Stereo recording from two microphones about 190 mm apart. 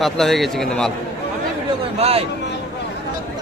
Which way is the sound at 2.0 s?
30° right (ahead or behind).